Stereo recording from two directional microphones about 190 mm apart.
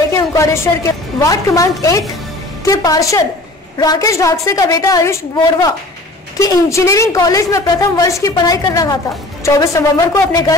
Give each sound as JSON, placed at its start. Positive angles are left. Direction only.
{"t": 0.1, "sound": "a woman's voice", "side_deg": 15}